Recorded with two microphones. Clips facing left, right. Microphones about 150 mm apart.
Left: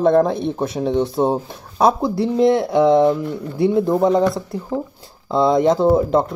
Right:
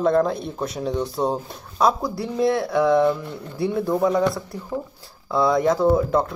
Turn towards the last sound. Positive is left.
turn(degrees=25)  # may be behind; listen again after turning